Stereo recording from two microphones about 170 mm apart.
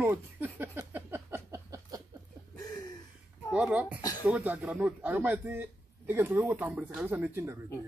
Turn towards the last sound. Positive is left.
turn(degrees=-15)  # may be behind; listen again after turning